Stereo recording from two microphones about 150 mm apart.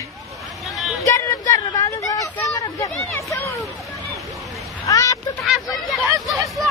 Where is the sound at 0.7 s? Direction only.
Centre (ahead or behind).